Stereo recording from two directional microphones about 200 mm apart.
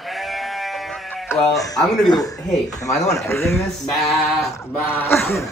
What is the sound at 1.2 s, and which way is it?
A man's voice, 15° left (ahead or behind).